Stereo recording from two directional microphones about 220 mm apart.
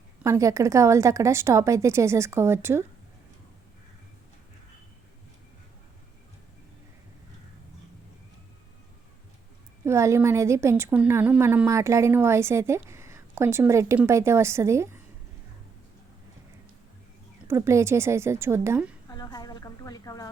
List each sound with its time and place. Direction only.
0.2 s a woman's voice: 15° right (ahead or behind)
9.8 s a woman's voice: 10° right (ahead or behind)
17.5 s a woman's voice: 10° right (ahead or behind)
19.0 s a sound: 15° left (ahead or behind)